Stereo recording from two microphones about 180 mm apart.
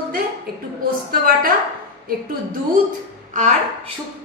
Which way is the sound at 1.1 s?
55° right (ahead or behind).